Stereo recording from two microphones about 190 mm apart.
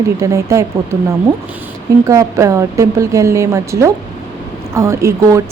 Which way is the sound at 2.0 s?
15° right (ahead or behind).